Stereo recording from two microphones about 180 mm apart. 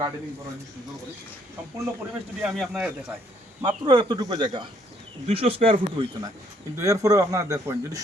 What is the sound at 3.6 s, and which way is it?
Speech, 25° right (ahead or behind).